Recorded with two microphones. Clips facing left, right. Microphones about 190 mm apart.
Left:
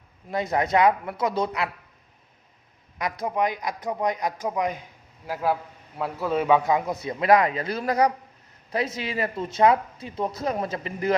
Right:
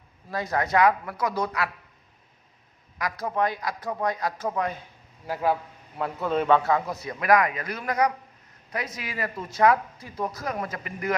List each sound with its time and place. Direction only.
0.3 s speech: 20° left (ahead or behind)
3.0 s a man's voice: 20° left (ahead or behind)
5.2 s a man's voice: 5° left (ahead or behind); by 11.2 s 25° left (ahead or behind)